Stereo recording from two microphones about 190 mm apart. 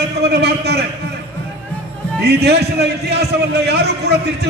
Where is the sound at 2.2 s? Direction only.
60° right (ahead or behind).